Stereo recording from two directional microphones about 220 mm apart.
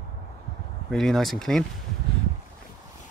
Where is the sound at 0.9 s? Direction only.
Centre (ahead or behind).